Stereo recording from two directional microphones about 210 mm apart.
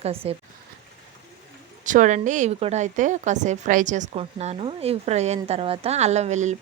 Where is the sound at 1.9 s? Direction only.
35° right (ahead or behind).